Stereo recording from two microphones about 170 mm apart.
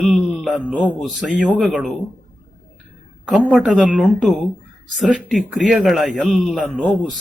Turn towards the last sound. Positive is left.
turn(degrees=0)  # may be behind; listen again after turning